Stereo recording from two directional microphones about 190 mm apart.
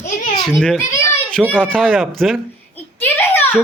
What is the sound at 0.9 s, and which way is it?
Children playing, 15° left (ahead or behind).